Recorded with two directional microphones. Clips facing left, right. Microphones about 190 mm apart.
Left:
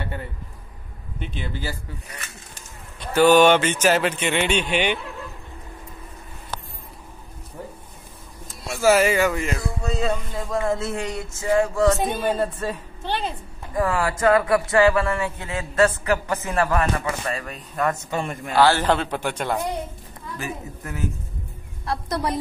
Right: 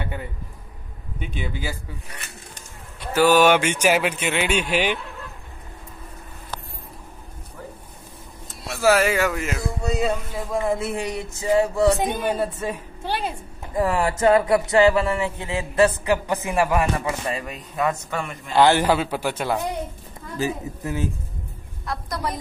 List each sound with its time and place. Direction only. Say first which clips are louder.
1.2 s speech: right 1 dB; 10° right (ahead or behind)
3.1 s speech: left 2 dB; 5° right (ahead or behind)
8.6 s speech: left 1 dB; centre (ahead or behind)
13.7 s speech: right 1 dB; 20° right (ahead or behind); by 17.9 s 5° right (ahead or behind)
17.9 s a man's voice: left 2 dB; 25° left (ahead or behind)
18.5 s speech: right 1 dB; 20° right (ahead or behind)
20.3 s a woman's voice: right 7 dB; 30° right (ahead or behind)